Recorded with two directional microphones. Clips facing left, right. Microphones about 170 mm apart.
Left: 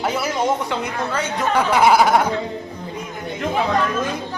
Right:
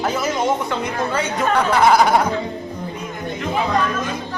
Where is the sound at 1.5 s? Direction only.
10° left (ahead or behind).